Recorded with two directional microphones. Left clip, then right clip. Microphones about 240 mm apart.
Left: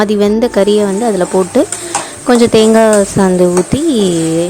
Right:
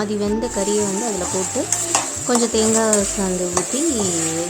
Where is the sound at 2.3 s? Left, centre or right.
Left.